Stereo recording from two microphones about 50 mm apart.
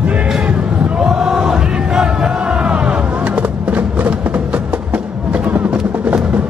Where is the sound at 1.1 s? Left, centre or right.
Centre.